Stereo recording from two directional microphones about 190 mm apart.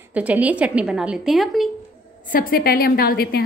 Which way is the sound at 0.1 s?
10° right (ahead or behind).